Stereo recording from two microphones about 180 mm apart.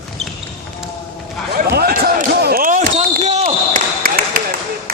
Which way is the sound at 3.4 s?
50° right (ahead or behind).